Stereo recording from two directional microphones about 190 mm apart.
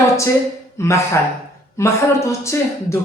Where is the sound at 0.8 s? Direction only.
15° left (ahead or behind).